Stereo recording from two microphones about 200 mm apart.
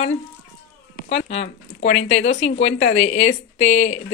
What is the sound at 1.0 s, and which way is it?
Speech, 35° left (ahead or behind).